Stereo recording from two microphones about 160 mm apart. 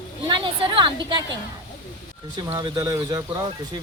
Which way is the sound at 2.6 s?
25° right (ahead or behind).